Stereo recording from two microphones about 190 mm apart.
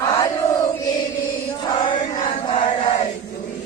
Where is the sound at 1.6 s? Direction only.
25° left (ahead or behind).